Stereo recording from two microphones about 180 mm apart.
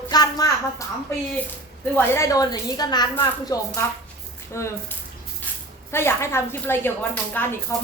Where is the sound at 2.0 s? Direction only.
15° left (ahead or behind).